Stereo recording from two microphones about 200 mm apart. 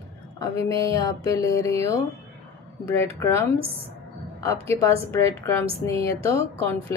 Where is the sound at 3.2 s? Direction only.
15° left (ahead or behind).